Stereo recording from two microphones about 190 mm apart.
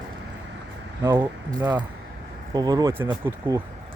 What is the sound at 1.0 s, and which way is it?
Speech, 20° right (ahead or behind).